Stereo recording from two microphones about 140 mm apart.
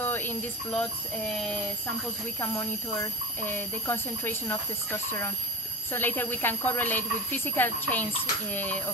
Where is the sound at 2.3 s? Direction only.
20° left (ahead or behind).